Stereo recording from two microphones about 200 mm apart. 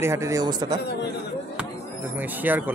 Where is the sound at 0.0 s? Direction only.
15° right (ahead or behind).